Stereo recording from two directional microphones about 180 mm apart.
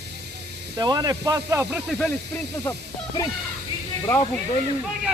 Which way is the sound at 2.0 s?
5° left (ahead or behind).